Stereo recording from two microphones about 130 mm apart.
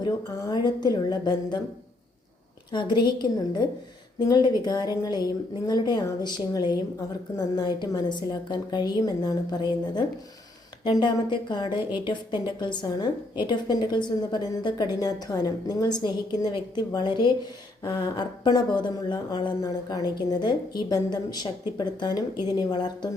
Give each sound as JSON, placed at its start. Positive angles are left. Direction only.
{"t": 0.0, "sound": "a woman's voice", "side_deg": 30}
{"t": 2.7, "sound": "a woman's voice", "side_deg": 35}
{"t": 11.8, "sound": "a woman's voice", "side_deg": -15}
{"t": 12.0, "sound": "a woman's voice", "side_deg": 35}